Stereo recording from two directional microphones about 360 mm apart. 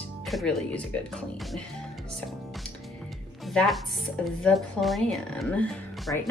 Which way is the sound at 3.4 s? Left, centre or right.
Centre.